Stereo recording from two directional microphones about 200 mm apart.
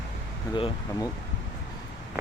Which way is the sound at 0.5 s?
20° left (ahead or behind).